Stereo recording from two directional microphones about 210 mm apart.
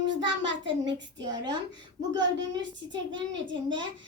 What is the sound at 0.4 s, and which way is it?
Speech, 60° right (ahead or behind).